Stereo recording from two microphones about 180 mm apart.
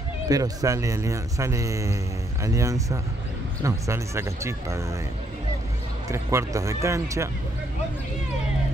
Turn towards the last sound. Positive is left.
turn(degrees=-15)  # may be behind; listen again after turning